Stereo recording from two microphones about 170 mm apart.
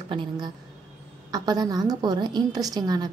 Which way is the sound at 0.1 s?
30° right (ahead or behind).